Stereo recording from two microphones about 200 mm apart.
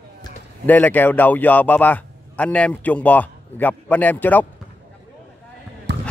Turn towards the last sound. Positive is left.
turn(degrees=-60)  # may be behind; listen again after turning